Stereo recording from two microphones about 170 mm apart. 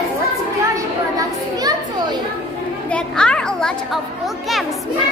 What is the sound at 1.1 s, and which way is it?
A child's voice, 20° right (ahead or behind).